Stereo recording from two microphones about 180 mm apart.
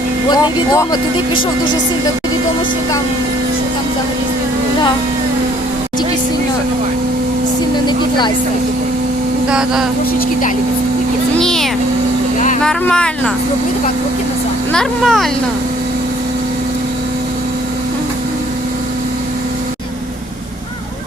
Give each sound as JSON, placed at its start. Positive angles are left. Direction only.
{"t": 0.3, "sound": "speech", "side_deg": 20}
{"t": 9.5, "sound": "speech", "side_deg": -5}
{"t": 11.3, "sound": "a sound", "side_deg": 0}
{"t": 12.6, "sound": "speech", "side_deg": 5}
{"t": 14.7, "sound": "speech", "side_deg": 5}